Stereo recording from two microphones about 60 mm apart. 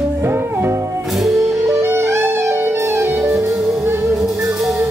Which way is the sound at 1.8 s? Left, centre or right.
Right.